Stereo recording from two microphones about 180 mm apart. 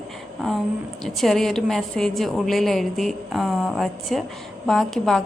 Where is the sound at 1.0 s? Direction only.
Centre (ahead or behind).